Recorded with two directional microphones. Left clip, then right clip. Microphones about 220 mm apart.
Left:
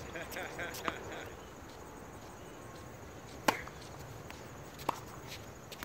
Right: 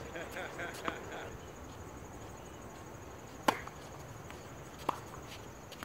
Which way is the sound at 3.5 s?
5° right (ahead or behind).